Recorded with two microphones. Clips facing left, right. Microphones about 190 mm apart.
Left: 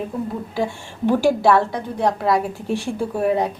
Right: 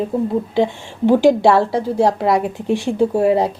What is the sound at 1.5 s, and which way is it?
A woman's voice, 30° right (ahead or behind).